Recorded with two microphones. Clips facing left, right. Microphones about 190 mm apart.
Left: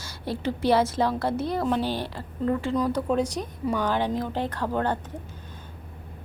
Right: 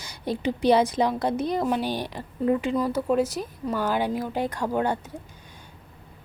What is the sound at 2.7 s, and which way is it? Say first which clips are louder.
A woman's voice: right 1 dB; 5° right (ahead or behind).